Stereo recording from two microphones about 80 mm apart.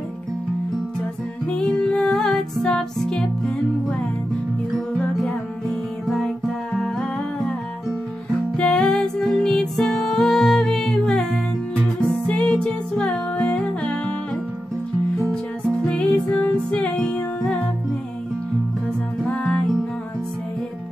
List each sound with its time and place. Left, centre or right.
1.5 s music: centre
4.9 s music: centre
8.5 s music: centre
15.8 s music: centre
19.2 s music: centre